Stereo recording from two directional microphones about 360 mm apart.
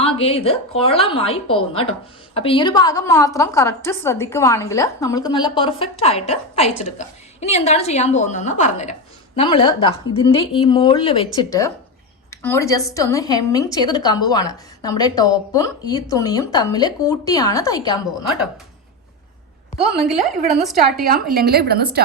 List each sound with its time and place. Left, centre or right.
0.0 s a woman's voice: centre
20.6 s a woman's voice: centre
21.3 s a woman's voice: right